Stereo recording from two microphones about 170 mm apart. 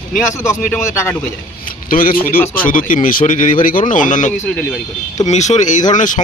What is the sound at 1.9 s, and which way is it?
Speech, 55° left (ahead or behind).